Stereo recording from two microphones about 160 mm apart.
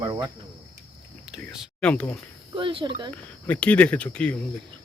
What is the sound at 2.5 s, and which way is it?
Speech, 30° right (ahead or behind).